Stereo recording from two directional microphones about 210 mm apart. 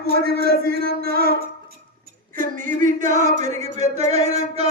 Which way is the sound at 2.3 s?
35° right (ahead or behind).